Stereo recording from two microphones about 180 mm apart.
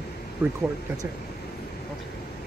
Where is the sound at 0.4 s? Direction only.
10° right (ahead or behind).